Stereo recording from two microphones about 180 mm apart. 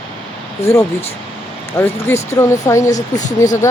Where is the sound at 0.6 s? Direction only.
15° left (ahead or behind).